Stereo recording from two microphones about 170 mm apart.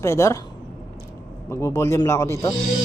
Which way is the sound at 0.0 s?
15° left (ahead or behind).